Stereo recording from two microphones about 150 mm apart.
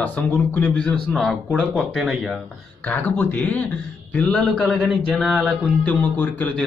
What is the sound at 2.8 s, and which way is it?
A man's voice, 10° left (ahead or behind).